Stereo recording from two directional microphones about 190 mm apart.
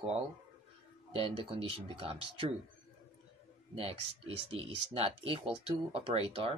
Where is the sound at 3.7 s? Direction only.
30° right (ahead or behind).